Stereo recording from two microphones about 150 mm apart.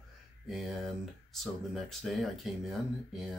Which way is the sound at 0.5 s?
Centre (ahead or behind).